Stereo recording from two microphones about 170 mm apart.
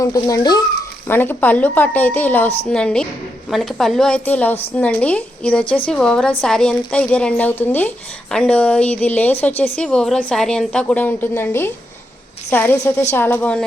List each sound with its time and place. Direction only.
0.0 s a woman's voice: 20° left (ahead or behind)